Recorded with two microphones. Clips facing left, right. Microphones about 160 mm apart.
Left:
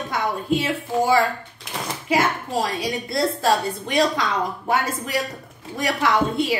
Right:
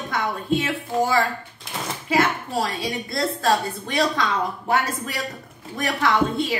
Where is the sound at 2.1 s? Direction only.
15° left (ahead or behind).